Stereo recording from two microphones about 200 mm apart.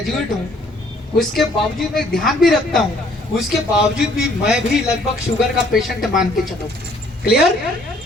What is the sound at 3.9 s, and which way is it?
A man's voice, 5° right (ahead or behind).